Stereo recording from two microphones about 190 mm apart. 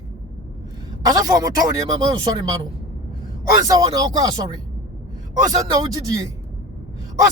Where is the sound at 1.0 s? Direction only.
20° right (ahead or behind).